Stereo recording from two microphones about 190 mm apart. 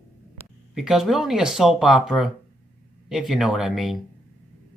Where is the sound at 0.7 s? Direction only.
Centre (ahead or behind).